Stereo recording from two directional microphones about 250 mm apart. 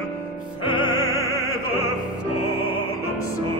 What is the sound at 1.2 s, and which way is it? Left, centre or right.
Opera, centre.